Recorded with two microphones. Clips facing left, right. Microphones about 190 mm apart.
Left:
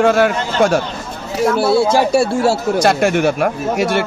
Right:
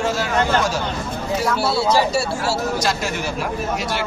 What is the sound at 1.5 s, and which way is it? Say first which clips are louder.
Speech: left 6 dB; 50° left (ahead or behind).